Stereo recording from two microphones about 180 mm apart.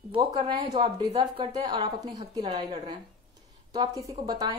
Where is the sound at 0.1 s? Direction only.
25° right (ahead or behind).